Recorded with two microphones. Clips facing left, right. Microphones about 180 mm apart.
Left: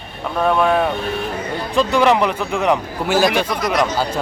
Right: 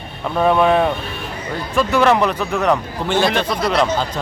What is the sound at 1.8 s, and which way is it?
A man's voice, 15° left (ahead or behind).